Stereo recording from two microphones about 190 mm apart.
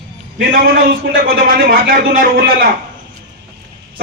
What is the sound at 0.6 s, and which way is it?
A man's voice, 50° right (ahead or behind).